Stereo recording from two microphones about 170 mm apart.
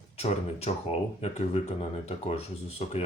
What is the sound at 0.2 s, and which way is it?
Speech, 40° left (ahead or behind).